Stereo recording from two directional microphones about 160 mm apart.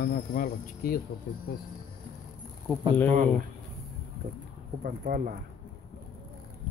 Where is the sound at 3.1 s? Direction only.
50° right (ahead or behind).